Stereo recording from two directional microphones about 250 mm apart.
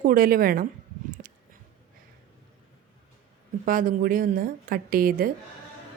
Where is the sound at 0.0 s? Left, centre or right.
Right.